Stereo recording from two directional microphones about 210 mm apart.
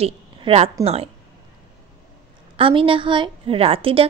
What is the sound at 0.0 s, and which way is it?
A woman's voice, 30° right (ahead or behind).